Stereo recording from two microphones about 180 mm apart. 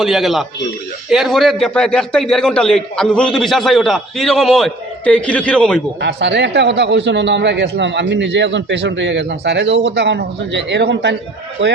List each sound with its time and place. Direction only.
0.0 s a man's voice: centre (ahead or behind)
6.0 s a man's voice: 70° right (ahead or behind)
11.6 s speech: 85° right